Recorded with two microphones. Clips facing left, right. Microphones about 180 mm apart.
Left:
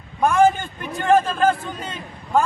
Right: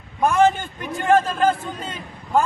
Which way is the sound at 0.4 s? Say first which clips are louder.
Left 1 dB; 15° left (ahead or behind).